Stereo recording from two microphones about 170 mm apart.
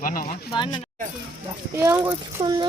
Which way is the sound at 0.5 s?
25° left (ahead or behind).